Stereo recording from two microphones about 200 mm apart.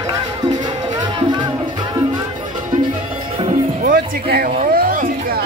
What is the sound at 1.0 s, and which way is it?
Music, 20° right (ahead or behind).